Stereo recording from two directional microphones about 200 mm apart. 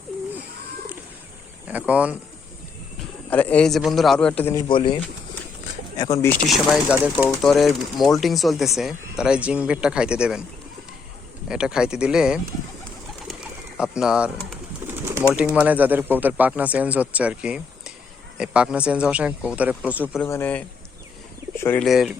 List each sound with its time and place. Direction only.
1.6 s speech: 5° right (ahead or behind)
3.2 s speech: 10° left (ahead or behind)
4.7 s speech: 25° left (ahead or behind)
6.0 s a man's voice: 15° left (ahead or behind)
6.5 s speech: 5° right (ahead or behind)
11.4 s speech: 5° right (ahead or behind)
13.2 s bird: 5° right (ahead or behind)
14.8 s bird: 10° right (ahead or behind)
15.4 s speech: 5° right (ahead or behind)
20.2 s a man's voice: 10° left (ahead or behind)
21.8 s speech: centre (ahead or behind)